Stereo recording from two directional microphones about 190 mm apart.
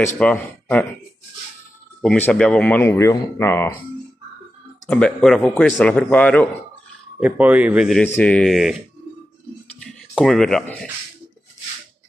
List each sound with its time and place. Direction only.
0.2 s speech: 5° left (ahead or behind)
2.0 s speech: 5° left (ahead or behind)
4.8 s speech: 5° left (ahead or behind)
7.2 s speech: 5° right (ahead or behind)
8.2 s speech: 5° left (ahead or behind)
9.8 s a sound: centre (ahead or behind)